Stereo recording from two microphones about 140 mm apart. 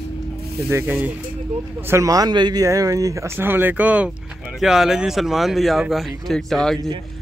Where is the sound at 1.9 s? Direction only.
25° right (ahead or behind).